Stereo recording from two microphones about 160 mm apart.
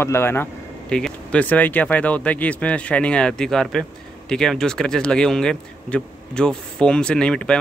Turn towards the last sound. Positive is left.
turn(degrees=5)  # may be behind; listen again after turning